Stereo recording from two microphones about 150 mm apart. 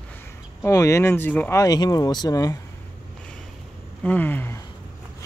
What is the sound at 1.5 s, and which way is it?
Speech, 25° left (ahead or behind).